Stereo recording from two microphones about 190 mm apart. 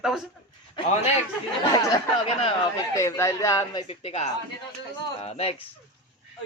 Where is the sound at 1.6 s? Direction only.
20° left (ahead or behind).